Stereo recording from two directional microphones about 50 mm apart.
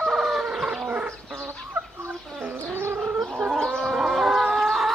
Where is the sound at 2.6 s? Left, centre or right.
Right.